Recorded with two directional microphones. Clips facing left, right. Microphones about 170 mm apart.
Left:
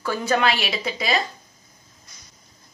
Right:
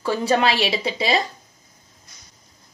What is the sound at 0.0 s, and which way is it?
A woman's voice, 30° right (ahead or behind).